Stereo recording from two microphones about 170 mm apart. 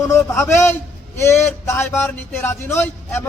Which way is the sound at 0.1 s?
15° left (ahead or behind).